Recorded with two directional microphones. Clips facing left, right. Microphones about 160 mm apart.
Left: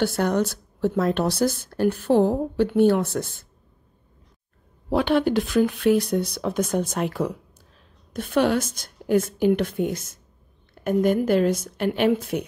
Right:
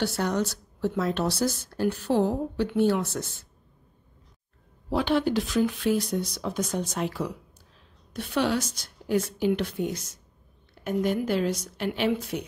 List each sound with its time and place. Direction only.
0.0 s speech: 55° left (ahead or behind)
4.8 s speech: 60° left (ahead or behind)